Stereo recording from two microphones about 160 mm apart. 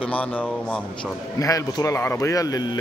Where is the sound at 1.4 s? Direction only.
20° left (ahead or behind).